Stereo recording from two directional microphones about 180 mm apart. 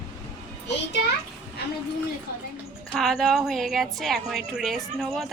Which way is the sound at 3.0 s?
Centre (ahead or behind).